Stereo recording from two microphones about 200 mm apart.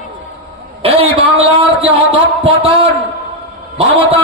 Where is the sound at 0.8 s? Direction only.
30° right (ahead or behind).